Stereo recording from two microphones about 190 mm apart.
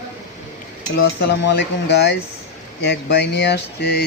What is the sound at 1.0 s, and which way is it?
Speech, 60° left (ahead or behind).